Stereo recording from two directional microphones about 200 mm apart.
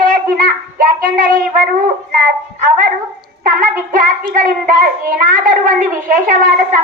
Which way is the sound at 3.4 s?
40° right (ahead or behind).